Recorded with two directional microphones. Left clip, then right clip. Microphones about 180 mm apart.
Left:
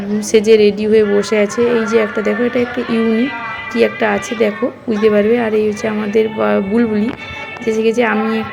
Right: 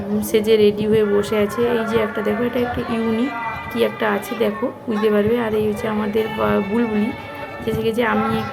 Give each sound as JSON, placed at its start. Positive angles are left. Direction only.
{"t": 0.3, "sound": "a woman's voice", "side_deg": 20}
{"t": 3.8, "sound": "a woman's voice", "side_deg": 20}